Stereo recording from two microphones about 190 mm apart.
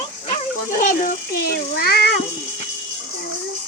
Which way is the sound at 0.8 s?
45° left (ahead or behind).